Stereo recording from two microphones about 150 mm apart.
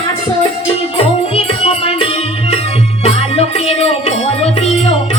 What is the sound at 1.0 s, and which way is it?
Music, 40° left (ahead or behind).